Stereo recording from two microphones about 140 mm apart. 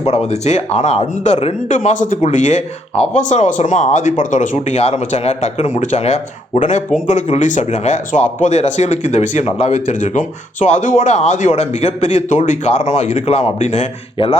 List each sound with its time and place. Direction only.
0.3 s speech: 50° left (ahead or behind)